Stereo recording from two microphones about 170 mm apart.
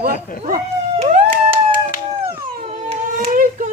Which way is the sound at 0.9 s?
40° right (ahead or behind).